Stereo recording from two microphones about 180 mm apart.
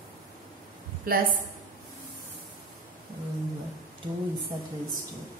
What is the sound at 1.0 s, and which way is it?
Speech, 55° right (ahead or behind).